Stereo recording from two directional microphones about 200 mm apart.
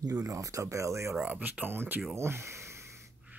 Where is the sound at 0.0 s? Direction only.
15° right (ahead or behind).